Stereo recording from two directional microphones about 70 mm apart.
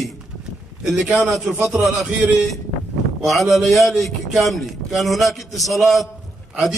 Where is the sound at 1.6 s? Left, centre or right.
Centre.